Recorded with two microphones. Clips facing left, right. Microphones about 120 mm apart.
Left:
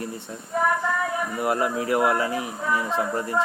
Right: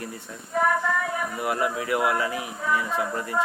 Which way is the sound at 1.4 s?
30° left (ahead or behind).